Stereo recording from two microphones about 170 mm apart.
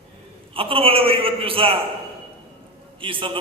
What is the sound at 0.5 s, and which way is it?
A man's voice, 35° right (ahead or behind).